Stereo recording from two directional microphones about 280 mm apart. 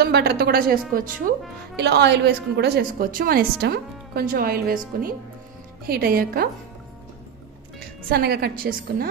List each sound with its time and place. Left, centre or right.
0.0 s a woman's voice: right
7.8 s a woman's voice: right